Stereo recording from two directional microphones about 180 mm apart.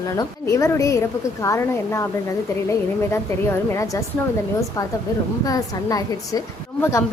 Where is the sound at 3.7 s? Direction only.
15° left (ahead or behind).